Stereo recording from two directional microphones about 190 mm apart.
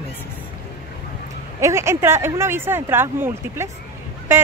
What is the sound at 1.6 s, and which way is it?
Speech, 15° right (ahead or behind).